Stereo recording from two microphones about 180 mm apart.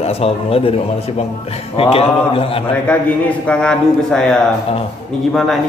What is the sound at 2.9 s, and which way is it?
A man's voice, 5° left (ahead or behind).